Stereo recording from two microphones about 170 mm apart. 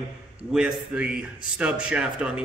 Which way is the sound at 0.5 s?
5° right (ahead or behind).